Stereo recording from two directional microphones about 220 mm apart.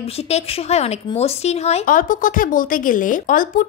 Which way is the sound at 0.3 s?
30° left (ahead or behind).